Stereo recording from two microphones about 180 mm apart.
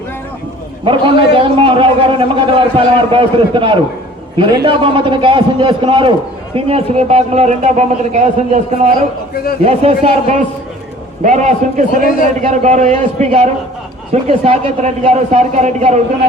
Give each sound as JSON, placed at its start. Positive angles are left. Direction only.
{"t": 0.9, "sound": "a man's voice", "side_deg": -30}